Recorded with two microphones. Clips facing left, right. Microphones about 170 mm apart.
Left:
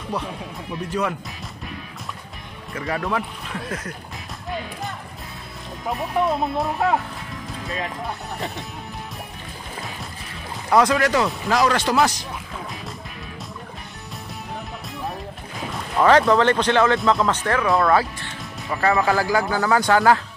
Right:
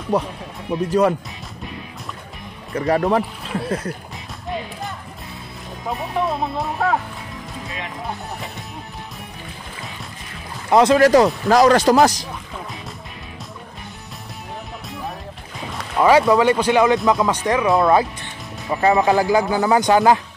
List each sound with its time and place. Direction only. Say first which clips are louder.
0.7 s speech: right 8 dB; 40° right (ahead or behind)
2.7 s speech: right 7 dB; 35° right (ahead or behind)
5.9 s speech: left 1 dB; centre (ahead or behind)
10.7 s speech: right 5 dB; 25° right (ahead or behind); by 12.3 s 40° right (ahead or behind)
16.0 s speech: right 2 dB; 10° right (ahead or behind)